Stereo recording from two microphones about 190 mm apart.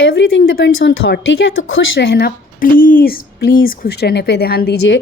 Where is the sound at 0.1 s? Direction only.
70° left (ahead or behind).